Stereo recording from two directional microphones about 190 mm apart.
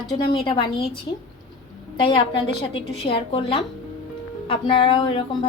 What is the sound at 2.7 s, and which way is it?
A woman's voice, 30° left (ahead or behind).